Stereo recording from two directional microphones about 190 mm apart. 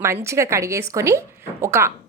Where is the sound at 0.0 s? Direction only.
15° right (ahead or behind).